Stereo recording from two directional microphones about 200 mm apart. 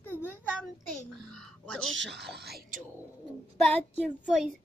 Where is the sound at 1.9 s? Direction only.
60° right (ahead or behind).